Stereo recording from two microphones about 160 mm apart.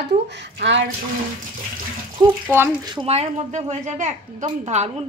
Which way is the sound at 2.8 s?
25° right (ahead or behind).